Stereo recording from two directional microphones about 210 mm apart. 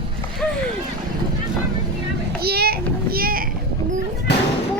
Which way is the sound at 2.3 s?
50° right (ahead or behind).